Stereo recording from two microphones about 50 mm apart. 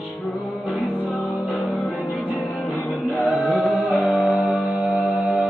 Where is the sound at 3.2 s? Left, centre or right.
Right.